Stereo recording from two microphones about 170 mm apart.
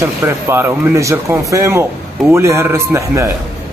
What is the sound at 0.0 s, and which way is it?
Speech, 15° right (ahead or behind).